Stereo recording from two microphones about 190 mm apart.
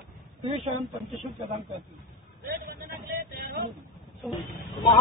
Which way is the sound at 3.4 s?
55° right (ahead or behind).